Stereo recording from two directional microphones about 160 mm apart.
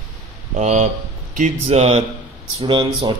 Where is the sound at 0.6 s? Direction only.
50° right (ahead or behind).